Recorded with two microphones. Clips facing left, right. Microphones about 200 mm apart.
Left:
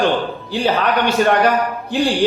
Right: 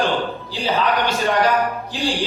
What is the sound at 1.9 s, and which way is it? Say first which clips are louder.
Speech: left 7 dB; 60° left (ahead or behind).